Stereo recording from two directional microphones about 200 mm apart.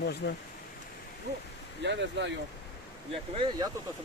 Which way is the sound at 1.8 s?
60° right (ahead or behind).